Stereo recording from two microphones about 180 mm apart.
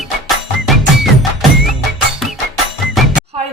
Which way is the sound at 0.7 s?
Centre (ahead or behind).